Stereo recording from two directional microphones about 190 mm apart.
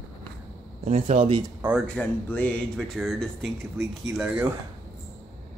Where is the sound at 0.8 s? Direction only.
35° right (ahead or behind).